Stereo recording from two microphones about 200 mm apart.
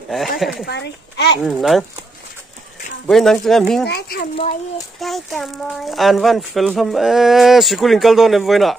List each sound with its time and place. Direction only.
0.4 s speech: centre (ahead or behind)
0.7 s a child's voice: 60° left (ahead or behind)
1.4 s speech: centre (ahead or behind)
3.1 s speech: centre (ahead or behind)
3.8 s a child's voice: 55° left (ahead or behind)
5.0 s speech: centre (ahead or behind)